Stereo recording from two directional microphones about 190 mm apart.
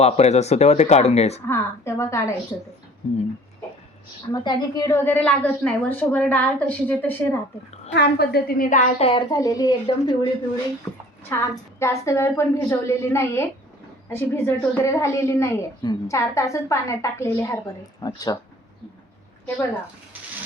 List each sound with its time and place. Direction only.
0.0 s speech: 35° left (ahead or behind)
1.5 s a woman's voice: 15° left (ahead or behind)
4.3 s a woman's voice: 20° left (ahead or behind)
7.9 s a woman's voice: 60° left (ahead or behind)
9.0 s speech: 30° left (ahead or behind)
9.3 s speech: 20° left (ahead or behind)
11.3 s a woman's voice: 15° left (ahead or behind)